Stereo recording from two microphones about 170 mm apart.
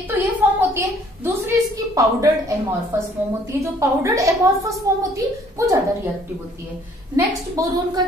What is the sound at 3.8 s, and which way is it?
Speech, 20° right (ahead or behind).